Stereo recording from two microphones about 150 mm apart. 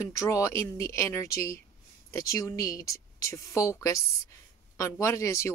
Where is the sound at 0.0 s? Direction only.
20° left (ahead or behind).